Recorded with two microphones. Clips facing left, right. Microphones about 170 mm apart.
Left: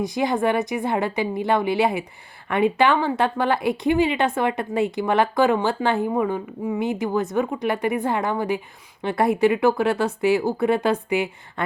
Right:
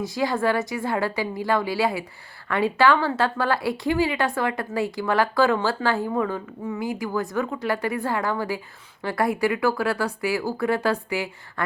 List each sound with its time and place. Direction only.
0.0 s a woman's voice: 20° left (ahead or behind)